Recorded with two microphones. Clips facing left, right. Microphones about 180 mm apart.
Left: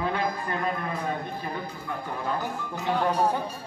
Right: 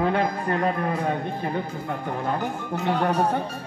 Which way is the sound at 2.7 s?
65° right (ahead or behind).